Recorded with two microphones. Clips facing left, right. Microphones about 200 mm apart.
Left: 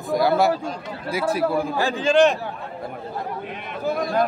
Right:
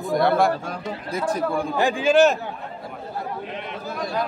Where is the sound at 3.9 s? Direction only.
50° left (ahead or behind).